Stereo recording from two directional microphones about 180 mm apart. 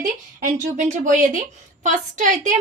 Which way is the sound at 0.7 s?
45° right (ahead or behind).